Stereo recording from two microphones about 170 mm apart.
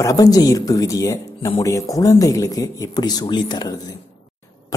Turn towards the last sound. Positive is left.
turn(degrees=25)  # may be behind; listen again after turning